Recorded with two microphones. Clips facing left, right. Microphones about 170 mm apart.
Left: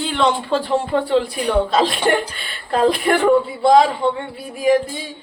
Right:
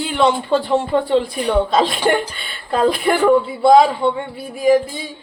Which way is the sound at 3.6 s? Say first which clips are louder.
Right 2 dB; 5° right (ahead or behind).